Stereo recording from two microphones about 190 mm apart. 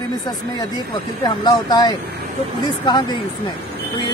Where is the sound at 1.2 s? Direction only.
20° left (ahead or behind).